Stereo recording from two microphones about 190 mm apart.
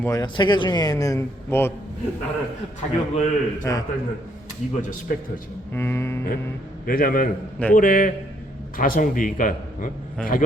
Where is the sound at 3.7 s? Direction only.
15° left (ahead or behind).